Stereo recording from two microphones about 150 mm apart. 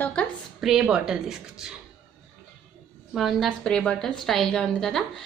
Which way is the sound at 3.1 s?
Centre (ahead or behind).